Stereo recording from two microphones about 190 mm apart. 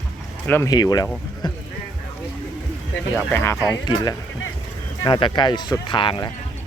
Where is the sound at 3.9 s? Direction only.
25° left (ahead or behind).